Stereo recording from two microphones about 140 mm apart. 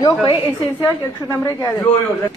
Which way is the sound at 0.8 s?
15° left (ahead or behind).